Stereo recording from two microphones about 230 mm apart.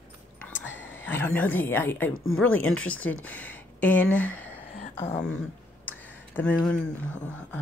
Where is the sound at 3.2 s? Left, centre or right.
Centre.